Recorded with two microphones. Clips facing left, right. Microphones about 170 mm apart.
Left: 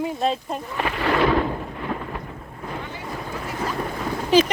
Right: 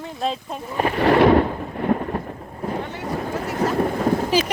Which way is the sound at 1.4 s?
45° right (ahead or behind).